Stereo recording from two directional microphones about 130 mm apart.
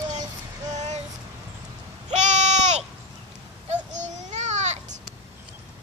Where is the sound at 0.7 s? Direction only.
65° right (ahead or behind).